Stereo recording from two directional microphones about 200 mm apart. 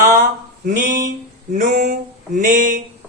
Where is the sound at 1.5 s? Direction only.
40° right (ahead or behind).